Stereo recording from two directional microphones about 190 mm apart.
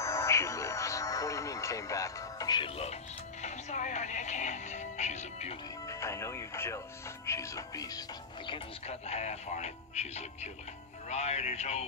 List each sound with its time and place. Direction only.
0.0 s music: 15° left (ahead or behind); by 3.0 s 30° left (ahead or behind)
3.4 s speech: 40° left (ahead or behind)
5.9 s speech: 15° left (ahead or behind)
8.5 s speech: 30° left (ahead or behind)